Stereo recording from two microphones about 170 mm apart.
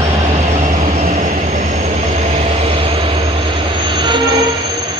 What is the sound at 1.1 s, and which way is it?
Vehicle, 45° right (ahead or behind).